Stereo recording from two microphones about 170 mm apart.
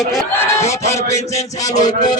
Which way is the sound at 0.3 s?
15° left (ahead or behind).